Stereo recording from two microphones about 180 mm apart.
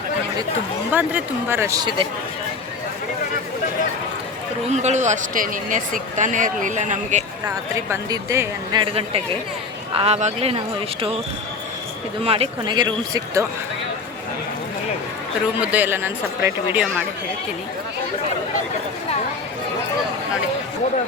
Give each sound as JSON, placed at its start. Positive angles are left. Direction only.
{"t": 0.9, "sound": "speech", "side_deg": -10}
{"t": 4.7, "sound": "speech", "side_deg": -40}
{"t": 7.4, "sound": "speech", "side_deg": -20}
{"t": 12.2, "sound": "speech", "side_deg": -30}
{"t": 15.6, "sound": "speech", "side_deg": -10}